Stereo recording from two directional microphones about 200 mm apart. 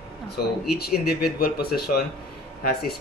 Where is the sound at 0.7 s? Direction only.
50° left (ahead or behind).